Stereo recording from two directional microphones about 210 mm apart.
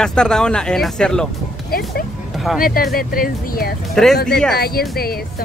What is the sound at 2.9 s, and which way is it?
Speech, 45° left (ahead or behind).